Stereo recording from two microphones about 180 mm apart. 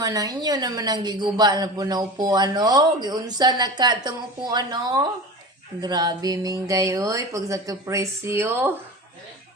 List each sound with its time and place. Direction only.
0.0 s a woman's voice: 20° right (ahead or behind)